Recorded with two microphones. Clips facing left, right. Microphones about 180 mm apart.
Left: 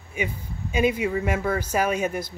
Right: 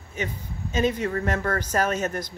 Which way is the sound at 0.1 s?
10° left (ahead or behind).